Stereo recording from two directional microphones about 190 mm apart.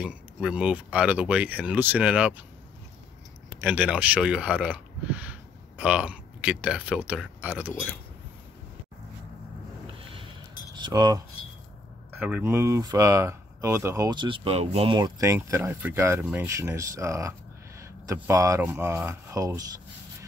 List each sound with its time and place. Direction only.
0.0 s speech: 5° right (ahead or behind)
3.6 s speech: 10° right (ahead or behind)
10.7 s cutlery: 20° right (ahead or behind)
12.2 s speech: 10° right (ahead or behind); by 15.0 s 30° right (ahead or behind)
15.0 s speech: 20° right (ahead or behind)